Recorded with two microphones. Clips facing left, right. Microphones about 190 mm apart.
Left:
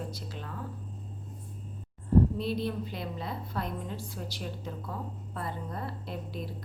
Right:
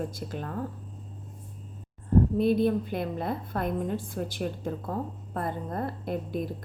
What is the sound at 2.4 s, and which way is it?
A woman's voice, 50° right (ahead or behind).